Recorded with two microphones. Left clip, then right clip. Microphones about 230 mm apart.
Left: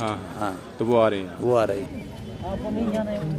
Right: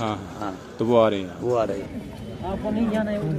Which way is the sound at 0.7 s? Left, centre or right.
Right.